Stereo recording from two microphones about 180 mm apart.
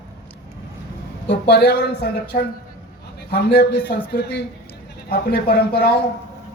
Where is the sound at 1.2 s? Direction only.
65° left (ahead or behind).